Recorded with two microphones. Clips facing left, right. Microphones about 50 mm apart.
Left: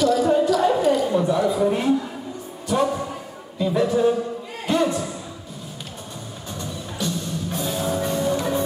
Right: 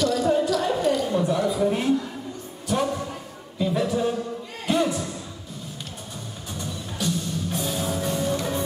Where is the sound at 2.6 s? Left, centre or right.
Centre.